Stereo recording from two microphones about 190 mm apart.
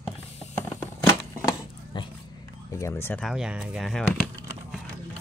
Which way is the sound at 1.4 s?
25° left (ahead or behind).